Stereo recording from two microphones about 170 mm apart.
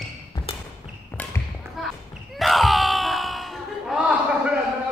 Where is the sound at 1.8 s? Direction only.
Centre (ahead or behind).